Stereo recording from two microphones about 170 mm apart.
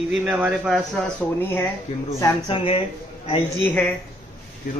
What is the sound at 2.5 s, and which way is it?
Speech, 30° left (ahead or behind).